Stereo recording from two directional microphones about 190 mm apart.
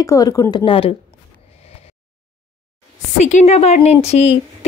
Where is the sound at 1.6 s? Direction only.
30° left (ahead or behind).